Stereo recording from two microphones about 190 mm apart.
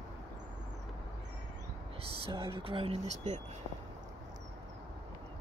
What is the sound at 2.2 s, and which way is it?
Speech, 30° right (ahead or behind).